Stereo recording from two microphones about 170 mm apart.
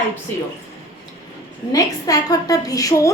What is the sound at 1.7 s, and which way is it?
A woman's voice, 20° left (ahead or behind).